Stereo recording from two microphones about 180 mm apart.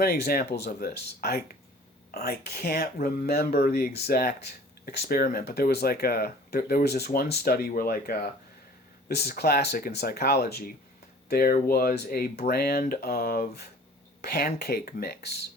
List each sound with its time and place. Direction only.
0.0 s speech: 60° left (ahead or behind)